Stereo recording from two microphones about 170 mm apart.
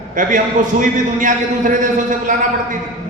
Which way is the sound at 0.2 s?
50° right (ahead or behind).